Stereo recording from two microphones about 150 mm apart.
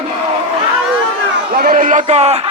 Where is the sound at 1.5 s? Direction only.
75° right (ahead or behind); by 2.5 s 45° right (ahead or behind).